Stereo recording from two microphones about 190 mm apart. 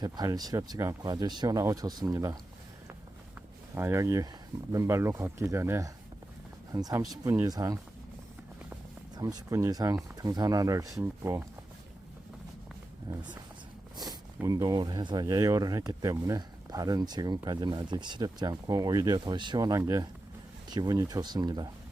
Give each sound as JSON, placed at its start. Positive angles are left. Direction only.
{"t": 0.0, "sound": "speech", "side_deg": -20}
{"t": 3.8, "sound": "speech", "side_deg": -15}
{"t": 9.1, "sound": "speech", "side_deg": -20}
{"t": 13.1, "sound": "speech", "side_deg": -20}
{"t": 13.9, "sound": "a sound", "side_deg": -20}
{"t": 14.4, "sound": "speech", "side_deg": -20}